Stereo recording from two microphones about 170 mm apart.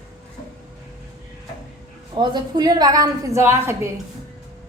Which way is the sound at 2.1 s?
25° right (ahead or behind).